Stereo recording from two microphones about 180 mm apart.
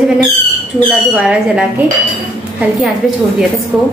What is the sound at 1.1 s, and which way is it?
Speech, 5° right (ahead or behind).